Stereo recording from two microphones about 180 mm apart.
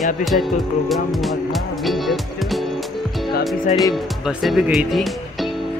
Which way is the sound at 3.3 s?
55° left (ahead or behind).